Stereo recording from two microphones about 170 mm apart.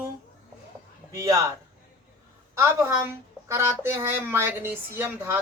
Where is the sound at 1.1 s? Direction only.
20° right (ahead or behind).